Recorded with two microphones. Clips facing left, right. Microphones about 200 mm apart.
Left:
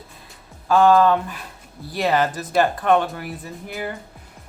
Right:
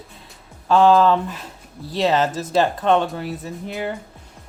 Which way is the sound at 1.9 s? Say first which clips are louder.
Right 1 dB; 20° right (ahead or behind).